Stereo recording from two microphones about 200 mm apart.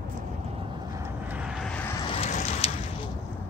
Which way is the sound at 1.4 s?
5° left (ahead or behind).